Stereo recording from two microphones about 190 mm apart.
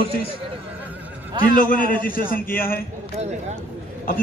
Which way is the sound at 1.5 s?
45° left (ahead or behind).